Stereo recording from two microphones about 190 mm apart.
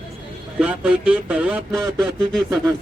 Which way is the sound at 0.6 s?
5° right (ahead or behind).